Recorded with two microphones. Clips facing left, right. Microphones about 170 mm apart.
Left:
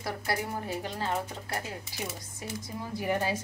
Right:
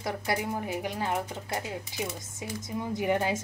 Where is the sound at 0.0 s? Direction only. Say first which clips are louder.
Right 2 dB; 15° right (ahead or behind).